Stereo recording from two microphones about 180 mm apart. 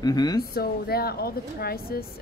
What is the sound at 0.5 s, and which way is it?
A woman's voice, 60° left (ahead or behind).